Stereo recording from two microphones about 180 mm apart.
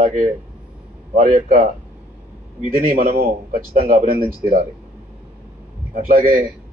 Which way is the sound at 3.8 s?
35° right (ahead or behind).